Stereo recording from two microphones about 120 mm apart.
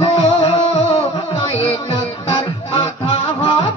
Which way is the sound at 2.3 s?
50° left (ahead or behind).